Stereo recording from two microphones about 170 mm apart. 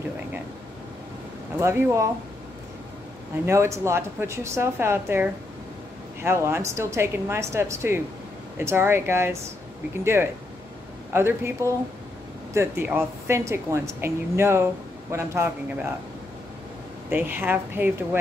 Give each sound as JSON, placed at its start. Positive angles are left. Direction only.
{"t": 1.6, "sound": "a woman's voice", "side_deg": -15}
{"t": 3.4, "sound": "a woman's voice", "side_deg": -15}
{"t": 11.1, "sound": "a woman's voice", "side_deg": -15}
{"t": 17.1, "sound": "a woman's voice", "side_deg": -10}